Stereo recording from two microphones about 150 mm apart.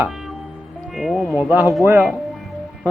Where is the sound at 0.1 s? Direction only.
Centre (ahead or behind).